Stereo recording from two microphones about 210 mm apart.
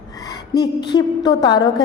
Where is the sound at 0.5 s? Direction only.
20° left (ahead or behind).